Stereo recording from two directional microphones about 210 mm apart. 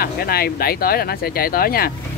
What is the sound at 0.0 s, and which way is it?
Speech, 45° left (ahead or behind).